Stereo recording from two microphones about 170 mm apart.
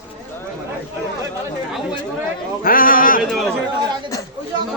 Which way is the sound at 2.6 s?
55° left (ahead or behind).